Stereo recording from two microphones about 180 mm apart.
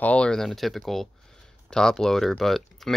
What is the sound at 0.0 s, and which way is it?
Speech, 5° left (ahead or behind).